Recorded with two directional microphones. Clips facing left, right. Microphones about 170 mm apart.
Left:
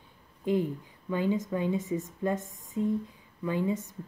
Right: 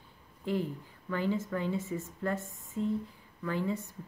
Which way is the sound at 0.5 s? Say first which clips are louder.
Left 5 dB; 15° left (ahead or behind).